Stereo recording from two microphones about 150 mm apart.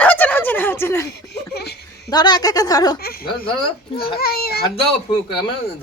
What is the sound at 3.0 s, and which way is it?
Speech, 90° left.